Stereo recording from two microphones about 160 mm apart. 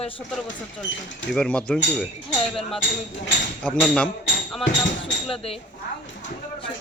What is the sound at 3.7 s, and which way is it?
Speech, 5° left (ahead or behind).